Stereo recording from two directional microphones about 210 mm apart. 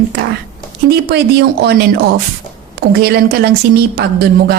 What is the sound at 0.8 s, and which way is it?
Speech, 50° right (ahead or behind).